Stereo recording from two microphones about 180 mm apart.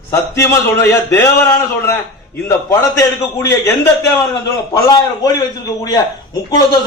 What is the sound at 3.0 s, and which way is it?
A man's voice, 15° left (ahead or behind).